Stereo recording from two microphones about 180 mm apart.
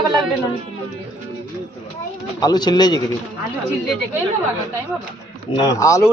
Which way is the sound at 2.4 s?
25° left (ahead or behind).